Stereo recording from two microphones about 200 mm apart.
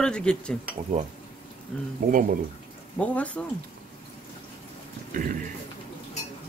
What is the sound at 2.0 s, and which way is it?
Music, 40° right (ahead or behind).